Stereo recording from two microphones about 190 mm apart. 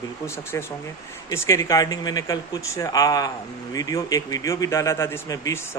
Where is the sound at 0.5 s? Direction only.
15° left (ahead or behind).